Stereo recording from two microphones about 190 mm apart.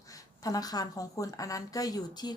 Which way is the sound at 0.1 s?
20° left (ahead or behind).